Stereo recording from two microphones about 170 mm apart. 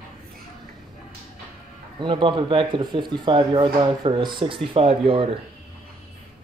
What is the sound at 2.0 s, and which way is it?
Speech, 30° right (ahead or behind).